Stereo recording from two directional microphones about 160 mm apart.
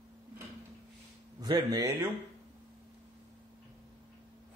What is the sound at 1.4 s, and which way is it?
Speech, 25° right (ahead or behind).